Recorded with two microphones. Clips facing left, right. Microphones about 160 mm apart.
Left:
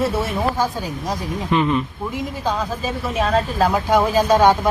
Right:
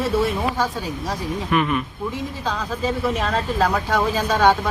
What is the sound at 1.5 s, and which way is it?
Speech, 25° left (ahead or behind).